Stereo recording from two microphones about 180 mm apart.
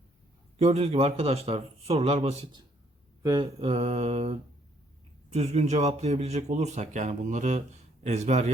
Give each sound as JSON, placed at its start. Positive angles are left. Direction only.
{"t": 0.6, "sound": "a man's voice", "side_deg": -35}